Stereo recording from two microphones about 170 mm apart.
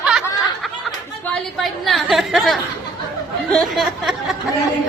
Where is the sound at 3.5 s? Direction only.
Centre (ahead or behind).